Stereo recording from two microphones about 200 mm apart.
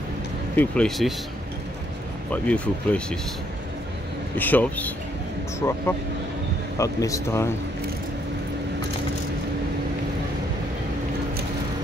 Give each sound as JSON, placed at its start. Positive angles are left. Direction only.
{"t": 0.6, "sound": "speech", "side_deg": 5}
{"t": 2.4, "sound": "speech", "side_deg": 5}
{"t": 4.4, "sound": "a man's voice", "side_deg": 10}